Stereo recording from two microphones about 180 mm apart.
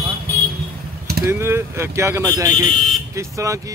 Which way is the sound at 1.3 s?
15° right (ahead or behind).